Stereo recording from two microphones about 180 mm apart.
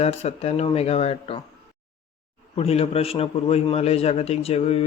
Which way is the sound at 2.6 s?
35° left (ahead or behind).